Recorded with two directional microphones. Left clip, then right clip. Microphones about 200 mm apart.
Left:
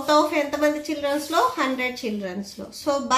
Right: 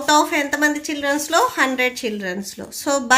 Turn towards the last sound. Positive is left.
turn(degrees=-50)  # may be behind; listen again after turning